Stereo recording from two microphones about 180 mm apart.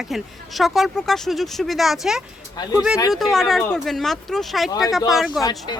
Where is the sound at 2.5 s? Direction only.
20° left (ahead or behind).